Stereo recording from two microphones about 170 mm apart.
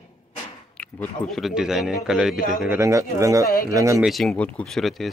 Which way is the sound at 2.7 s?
15° right (ahead or behind).